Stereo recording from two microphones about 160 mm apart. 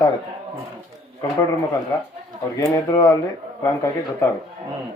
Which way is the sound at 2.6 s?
20° left (ahead or behind).